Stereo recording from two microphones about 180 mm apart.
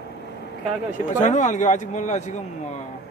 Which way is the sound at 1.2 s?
45° left (ahead or behind).